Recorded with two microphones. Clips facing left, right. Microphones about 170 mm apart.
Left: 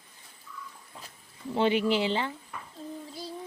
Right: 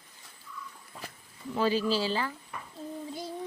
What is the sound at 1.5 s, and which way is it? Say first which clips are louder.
Speech: left 2 dB; 20° left (ahead or behind).